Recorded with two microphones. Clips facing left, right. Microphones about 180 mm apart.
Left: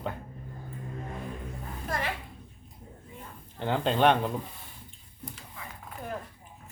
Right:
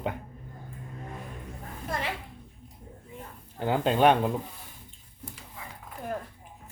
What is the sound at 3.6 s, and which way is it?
Speech, 5° right (ahead or behind).